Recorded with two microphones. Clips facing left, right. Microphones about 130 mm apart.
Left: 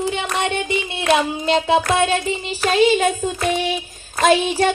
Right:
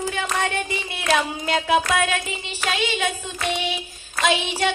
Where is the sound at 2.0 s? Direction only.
30° left (ahead or behind).